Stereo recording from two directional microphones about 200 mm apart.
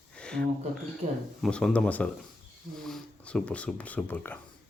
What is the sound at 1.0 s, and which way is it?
Speech, 40° right (ahead or behind).